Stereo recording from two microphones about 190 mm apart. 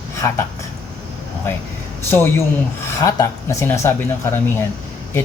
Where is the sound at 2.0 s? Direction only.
10° left (ahead or behind).